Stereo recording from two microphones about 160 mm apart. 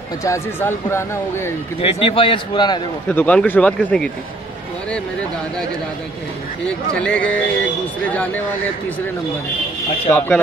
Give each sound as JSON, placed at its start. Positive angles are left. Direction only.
{"t": 0.2, "sound": "speech", "side_deg": 15}
{"t": 1.8, "sound": "a man's voice", "side_deg": 35}
{"t": 3.1, "sound": "speech", "side_deg": 10}
{"t": 6.6, "sound": "speech", "side_deg": 5}
{"t": 10.1, "sound": "speech", "side_deg": 10}